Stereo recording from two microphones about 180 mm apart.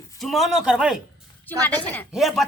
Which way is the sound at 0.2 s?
Centre (ahead or behind).